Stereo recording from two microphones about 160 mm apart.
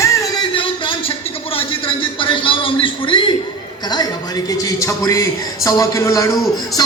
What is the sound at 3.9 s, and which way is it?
A man's voice, 25° left (ahead or behind).